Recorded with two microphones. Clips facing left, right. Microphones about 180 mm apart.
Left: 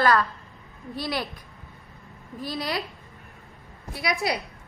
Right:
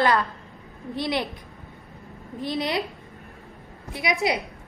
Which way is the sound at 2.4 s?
20° right (ahead or behind).